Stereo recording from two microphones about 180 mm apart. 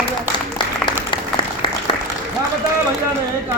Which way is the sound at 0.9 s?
30° left (ahead or behind).